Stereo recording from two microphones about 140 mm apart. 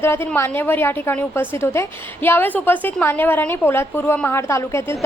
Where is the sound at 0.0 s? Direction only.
15° left (ahead or behind).